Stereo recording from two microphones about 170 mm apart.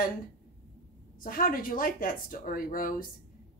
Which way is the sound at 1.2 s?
55° left (ahead or behind).